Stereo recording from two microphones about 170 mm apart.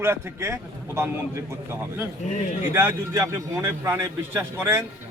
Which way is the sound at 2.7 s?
15° right (ahead or behind).